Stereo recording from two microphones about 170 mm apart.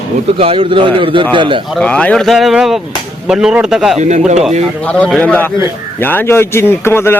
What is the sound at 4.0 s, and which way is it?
Speech, 45° right (ahead or behind).